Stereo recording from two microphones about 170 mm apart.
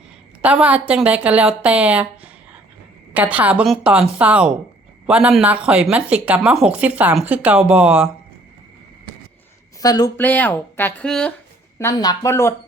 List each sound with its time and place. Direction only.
0.4 s speech: 10° right (ahead or behind)
9.8 s speech: 25° left (ahead or behind)
10.2 s speech: 10° left (ahead or behind)
11.8 s speech: 20° left (ahead or behind)